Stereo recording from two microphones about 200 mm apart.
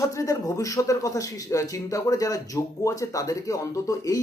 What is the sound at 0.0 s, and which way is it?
Speech, 15° left (ahead or behind).